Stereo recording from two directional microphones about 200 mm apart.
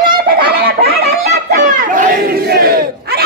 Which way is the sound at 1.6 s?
40° right (ahead or behind).